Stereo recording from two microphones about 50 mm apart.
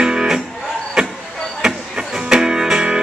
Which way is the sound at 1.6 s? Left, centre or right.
Centre.